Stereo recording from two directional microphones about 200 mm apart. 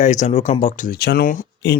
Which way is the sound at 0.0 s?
35° left (ahead or behind).